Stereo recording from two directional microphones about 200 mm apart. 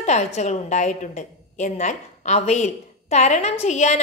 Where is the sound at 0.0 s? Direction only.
35° left (ahead or behind).